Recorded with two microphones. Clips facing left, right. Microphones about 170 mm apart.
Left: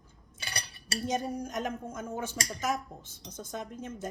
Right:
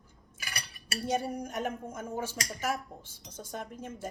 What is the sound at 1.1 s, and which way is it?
Speech, 10° right (ahead or behind).